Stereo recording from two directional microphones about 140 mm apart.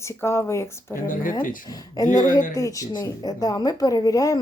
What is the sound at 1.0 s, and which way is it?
Speech, 75° left (ahead or behind).